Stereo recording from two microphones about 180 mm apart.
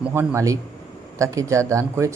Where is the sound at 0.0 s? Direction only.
10° right (ahead or behind).